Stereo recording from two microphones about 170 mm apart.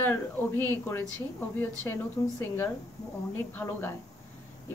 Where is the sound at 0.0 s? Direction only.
10° left (ahead or behind).